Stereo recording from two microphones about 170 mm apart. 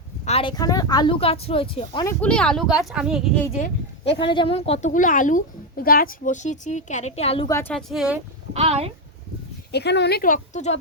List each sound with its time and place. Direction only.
0.3 s speech: 35° left (ahead or behind)
0.5 s speech: 20° left (ahead or behind)
2.0 s speech: 5° left (ahead or behind)
4.3 s a woman's voice: 30° left (ahead or behind)
4.9 s a woman's voice: 50° left (ahead or behind)
7.4 s a woman's voice: 15° left (ahead or behind)
7.7 s speech: 5° left (ahead or behind)
8.5 s speech: 35° right (ahead or behind)
9.7 s speech: 80° left; by 10.8 s 45° left (ahead or behind)